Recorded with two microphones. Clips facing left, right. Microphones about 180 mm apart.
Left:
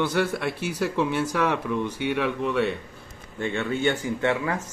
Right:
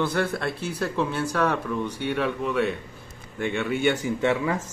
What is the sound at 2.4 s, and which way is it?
Speech, centre (ahead or behind).